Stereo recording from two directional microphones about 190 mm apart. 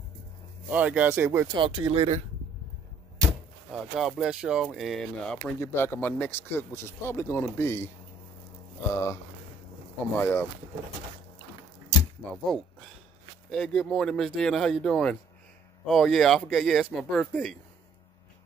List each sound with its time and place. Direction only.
0.7 s speech: 10° right (ahead or behind)
1.6 s speech: 25° right (ahead or behind)
3.7 s a man's voice: 5° right (ahead or behind); by 7.9 s 15° left (ahead or behind)
8.9 s a man's voice: 15° left (ahead or behind)
12.3 s speech: 5° left (ahead or behind)